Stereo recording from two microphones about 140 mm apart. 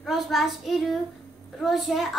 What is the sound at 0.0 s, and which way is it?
Speech, centre (ahead or behind).